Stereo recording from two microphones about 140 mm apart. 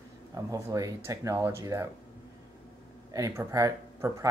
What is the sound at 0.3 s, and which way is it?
Speech, 20° right (ahead or behind).